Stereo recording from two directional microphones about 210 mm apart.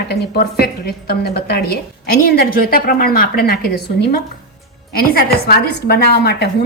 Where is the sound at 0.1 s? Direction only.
50° left (ahead or behind).